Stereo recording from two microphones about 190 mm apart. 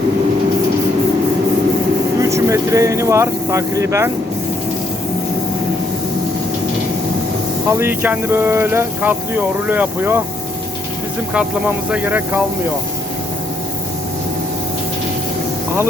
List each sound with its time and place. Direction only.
2.2 s speech: 15° right (ahead or behind)
7.7 s speech: 10° right (ahead or behind)
11.3 s speech: 5° right (ahead or behind)